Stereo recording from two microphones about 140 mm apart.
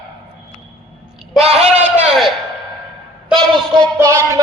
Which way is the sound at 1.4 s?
50° right (ahead or behind).